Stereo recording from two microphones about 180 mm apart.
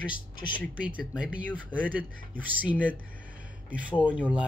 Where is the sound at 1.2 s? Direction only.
5° right (ahead or behind).